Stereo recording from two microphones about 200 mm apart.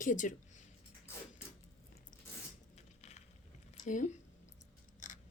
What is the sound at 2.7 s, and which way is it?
Crushing, 35° left (ahead or behind).